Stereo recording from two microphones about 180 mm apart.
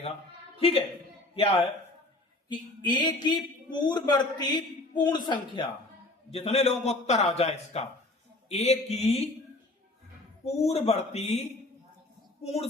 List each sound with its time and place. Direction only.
0.5 s a man's voice: 30° left (ahead or behind)
2.5 s speech: 25° left (ahead or behind)
6.3 s a man's voice: 35° left (ahead or behind)
10.4 s a man's voice: 35° left (ahead or behind)